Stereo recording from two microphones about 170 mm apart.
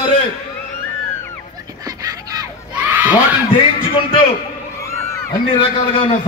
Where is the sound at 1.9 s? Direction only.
20° right (ahead or behind).